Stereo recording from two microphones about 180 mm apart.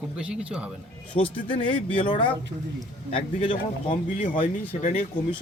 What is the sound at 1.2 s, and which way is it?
A man's voice, 30° left (ahead or behind).